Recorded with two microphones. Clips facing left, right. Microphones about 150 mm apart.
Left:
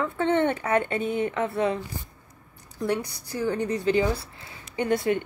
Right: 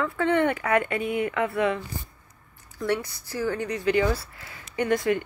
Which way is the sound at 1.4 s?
25° left (ahead or behind).